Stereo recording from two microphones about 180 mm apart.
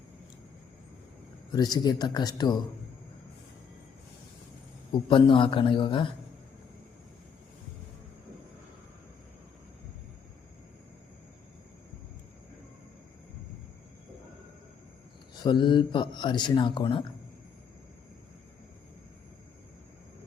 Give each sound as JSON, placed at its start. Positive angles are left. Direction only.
{"t": 1.5, "sound": "a man's voice", "side_deg": 20}
{"t": 4.9, "sound": "a man's voice", "side_deg": 25}
{"t": 15.4, "sound": "a man's voice", "side_deg": 25}